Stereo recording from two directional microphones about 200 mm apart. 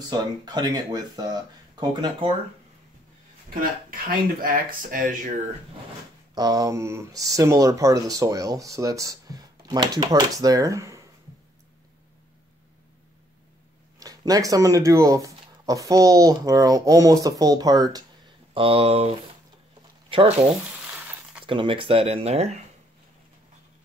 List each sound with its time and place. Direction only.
0.1 s speech: 20° right (ahead or behind)
3.4 s speech: 45° right (ahead or behind)
6.3 s speech: 20° right (ahead or behind)
13.9 s speech: 20° right (ahead or behind)
21.5 s speech: 25° right (ahead or behind)